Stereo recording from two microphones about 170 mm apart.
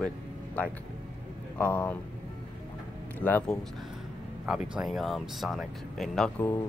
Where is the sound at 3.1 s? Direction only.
10° left (ahead or behind).